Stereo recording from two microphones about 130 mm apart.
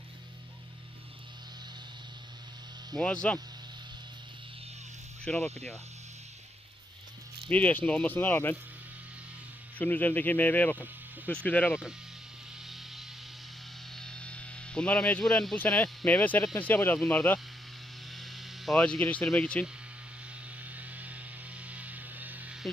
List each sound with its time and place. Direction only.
2.9 s speech: 5° left (ahead or behind)
5.2 s speech: 5° left (ahead or behind)
7.4 s speech: 10° left (ahead or behind)
9.7 s speech: 15° left (ahead or behind)
11.7 s speech: 5° right (ahead or behind)
12.6 s vehicle: centre (ahead or behind)
13.9 s speech: 5° left (ahead or behind)
18.1 s mains hum: centre (ahead or behind)
18.8 s speech: 10° left (ahead or behind)
20.7 s hum: 10° right (ahead or behind)